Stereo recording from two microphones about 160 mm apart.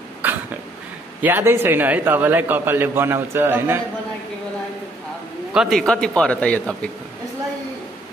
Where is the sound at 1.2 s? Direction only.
10° right (ahead or behind).